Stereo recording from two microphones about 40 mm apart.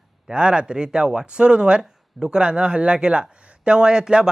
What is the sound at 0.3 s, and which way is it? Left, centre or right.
Speech, right.